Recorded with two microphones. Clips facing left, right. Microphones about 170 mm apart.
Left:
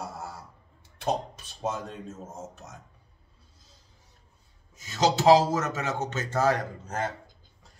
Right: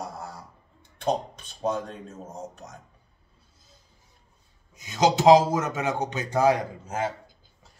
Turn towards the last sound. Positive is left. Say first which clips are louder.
# right 2 dB
turn(degrees=-10)  # may be behind; listen again after turning